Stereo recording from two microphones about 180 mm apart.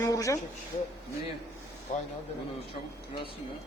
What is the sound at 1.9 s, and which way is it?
Speech, 45° left (ahead or behind).